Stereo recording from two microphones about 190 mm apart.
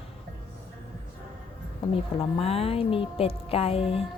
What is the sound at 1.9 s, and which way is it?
Speech, 30° left (ahead or behind).